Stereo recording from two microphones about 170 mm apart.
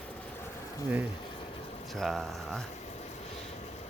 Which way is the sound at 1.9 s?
Centre (ahead or behind).